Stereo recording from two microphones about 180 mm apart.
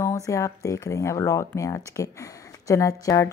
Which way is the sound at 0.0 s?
15° left (ahead or behind).